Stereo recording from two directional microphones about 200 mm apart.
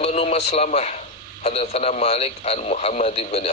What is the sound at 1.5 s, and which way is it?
A man's voice, 30° left (ahead or behind).